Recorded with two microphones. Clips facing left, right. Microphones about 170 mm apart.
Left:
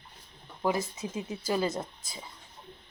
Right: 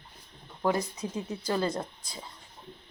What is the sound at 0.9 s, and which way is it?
Speech, 10° left (ahead or behind).